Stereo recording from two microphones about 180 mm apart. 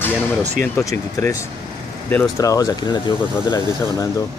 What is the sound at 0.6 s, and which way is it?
Speech, 15° left (ahead or behind).